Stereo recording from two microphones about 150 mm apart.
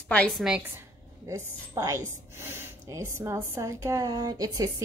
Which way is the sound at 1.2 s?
20° right (ahead or behind).